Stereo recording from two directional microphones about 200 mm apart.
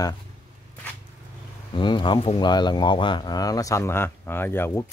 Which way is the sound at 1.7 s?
25° left (ahead or behind).